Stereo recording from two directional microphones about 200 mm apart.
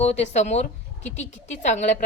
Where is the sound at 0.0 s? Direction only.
35° left (ahead or behind).